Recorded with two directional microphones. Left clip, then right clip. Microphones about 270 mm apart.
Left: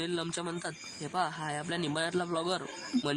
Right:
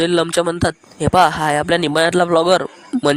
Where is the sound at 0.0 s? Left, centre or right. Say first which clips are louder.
Right 19 dB; right.